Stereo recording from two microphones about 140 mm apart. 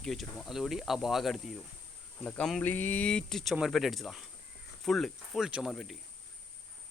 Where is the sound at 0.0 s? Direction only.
Centre (ahead or behind).